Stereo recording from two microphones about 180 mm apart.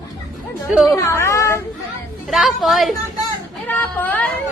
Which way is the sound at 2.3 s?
Centre (ahead or behind).